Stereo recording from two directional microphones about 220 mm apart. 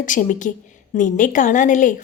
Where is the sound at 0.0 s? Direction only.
35° left (ahead or behind).